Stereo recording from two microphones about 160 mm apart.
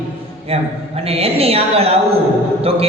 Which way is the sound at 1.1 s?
40° right (ahead or behind).